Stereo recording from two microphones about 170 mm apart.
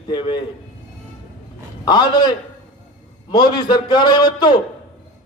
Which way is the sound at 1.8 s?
25° left (ahead or behind).